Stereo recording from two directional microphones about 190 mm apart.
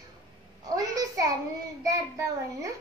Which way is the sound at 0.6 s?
20° right (ahead or behind).